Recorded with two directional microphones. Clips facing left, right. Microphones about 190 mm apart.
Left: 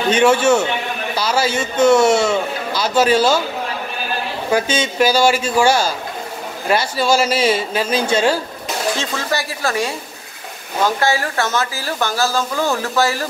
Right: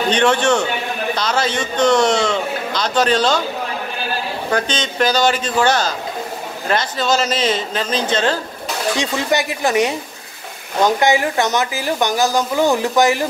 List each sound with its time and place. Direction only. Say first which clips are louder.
0.1 s a man's voice: left 3 dB; 5° left (ahead or behind)
4.5 s a man's voice: left 4 dB; 10° left (ahead or behind)
8.9 s speech: right 3 dB; 15° right (ahead or behind)